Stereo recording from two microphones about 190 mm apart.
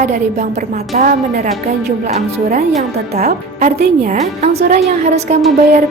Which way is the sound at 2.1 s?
35° right (ahead or behind).